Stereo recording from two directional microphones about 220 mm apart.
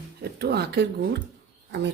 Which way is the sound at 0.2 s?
45° right (ahead or behind).